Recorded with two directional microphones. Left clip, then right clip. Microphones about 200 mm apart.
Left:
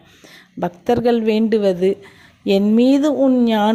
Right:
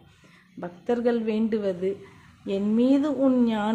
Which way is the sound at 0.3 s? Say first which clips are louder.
Left 13 dB; 35° left (ahead or behind).